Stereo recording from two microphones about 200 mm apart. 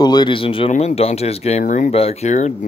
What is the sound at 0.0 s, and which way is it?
Speech, 20° left (ahead or behind).